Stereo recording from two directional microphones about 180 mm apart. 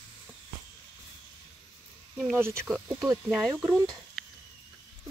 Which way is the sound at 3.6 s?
20° right (ahead or behind).